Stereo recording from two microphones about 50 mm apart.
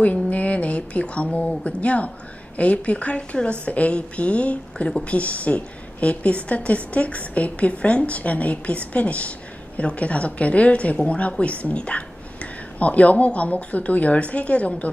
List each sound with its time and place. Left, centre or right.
0.0 s a woman's voice: left